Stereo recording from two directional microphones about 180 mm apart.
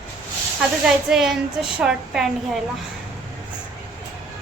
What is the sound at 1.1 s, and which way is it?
Speech, centre (ahead or behind).